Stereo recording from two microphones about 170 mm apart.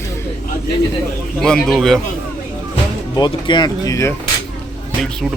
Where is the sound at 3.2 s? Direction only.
25° left (ahead or behind).